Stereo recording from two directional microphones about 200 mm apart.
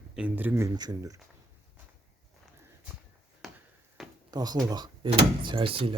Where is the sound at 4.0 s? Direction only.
Centre (ahead or behind).